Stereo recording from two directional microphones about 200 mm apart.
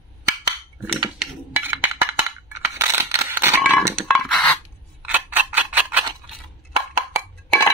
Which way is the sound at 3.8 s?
10° right (ahead or behind).